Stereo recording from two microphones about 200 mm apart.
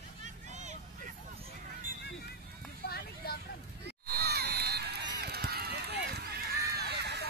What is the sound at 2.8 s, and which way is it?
Vehicle, 50° left (ahead or behind).